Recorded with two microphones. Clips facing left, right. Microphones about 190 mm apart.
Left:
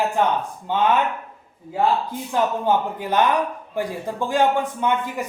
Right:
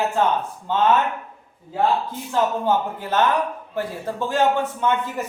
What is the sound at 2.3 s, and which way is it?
A man's voice, 15° left (ahead or behind).